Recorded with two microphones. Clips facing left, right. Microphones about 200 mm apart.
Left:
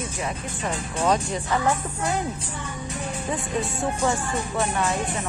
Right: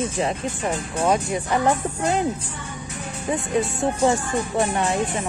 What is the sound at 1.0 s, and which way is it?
Speech, 10° right (ahead or behind).